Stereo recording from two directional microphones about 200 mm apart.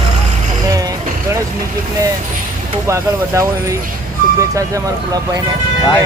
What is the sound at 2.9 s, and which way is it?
Speech, 15° right (ahead or behind).